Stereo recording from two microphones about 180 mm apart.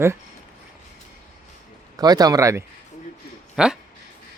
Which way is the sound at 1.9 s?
20° right (ahead or behind).